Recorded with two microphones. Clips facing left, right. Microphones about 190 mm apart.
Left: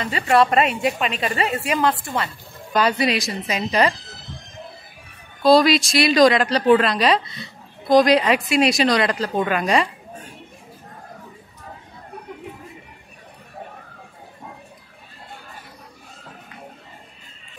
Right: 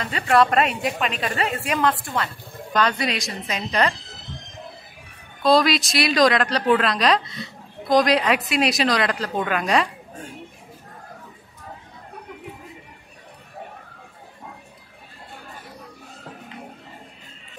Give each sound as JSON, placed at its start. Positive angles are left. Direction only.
{"t": 0.0, "sound": "a woman's voice", "side_deg": 0}
{"t": 5.4, "sound": "a woman's voice", "side_deg": 0}